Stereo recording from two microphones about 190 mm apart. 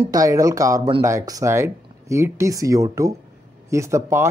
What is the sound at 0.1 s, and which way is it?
Speech, 20° right (ahead or behind).